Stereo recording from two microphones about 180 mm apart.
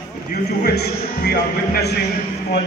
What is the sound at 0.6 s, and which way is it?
Speech, 60° left (ahead or behind).